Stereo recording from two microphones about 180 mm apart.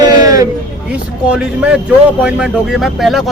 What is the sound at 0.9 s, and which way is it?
Speech, 5° right (ahead or behind).